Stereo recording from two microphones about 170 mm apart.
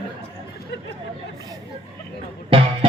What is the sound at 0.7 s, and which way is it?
Speech, 80° left.